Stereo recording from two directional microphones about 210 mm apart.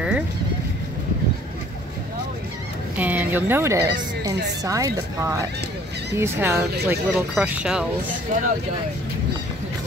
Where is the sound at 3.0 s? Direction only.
10° right (ahead or behind).